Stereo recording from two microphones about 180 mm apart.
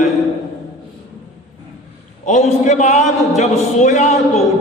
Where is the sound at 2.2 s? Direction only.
40° left (ahead or behind).